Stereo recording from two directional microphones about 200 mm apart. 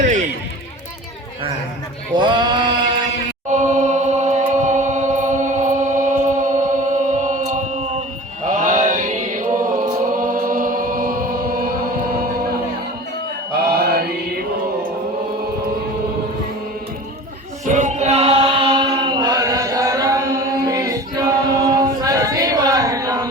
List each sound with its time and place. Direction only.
0.0 s music: 35° right (ahead or behind)
2.1 s male singing: 25° right (ahead or behind)
3.5 s chant: 35° right (ahead or behind)
8.5 s mantra: 40° right (ahead or behind)
13.8 s mantra: 50° right (ahead or behind)
17.7 s chant: 35° right (ahead or behind); by 23.3 s 15° right (ahead or behind)